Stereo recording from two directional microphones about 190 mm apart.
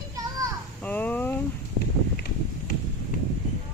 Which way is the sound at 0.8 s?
10° left (ahead or behind).